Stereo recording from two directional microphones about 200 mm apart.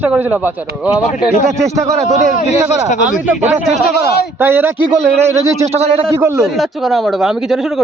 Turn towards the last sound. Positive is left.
turn(degrees=0)  # may be behind; listen again after turning